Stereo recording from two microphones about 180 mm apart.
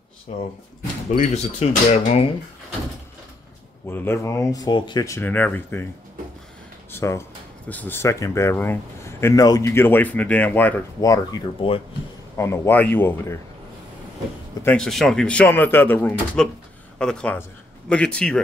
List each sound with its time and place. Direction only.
1.1 s speech: 40° left (ahead or behind)
3.9 s speech: 15° left (ahead or behind)
6.9 s speech: 15° left (ahead or behind)
12.4 s speech: 15° left (ahead or behind)
14.6 s speech: 5° left (ahead or behind)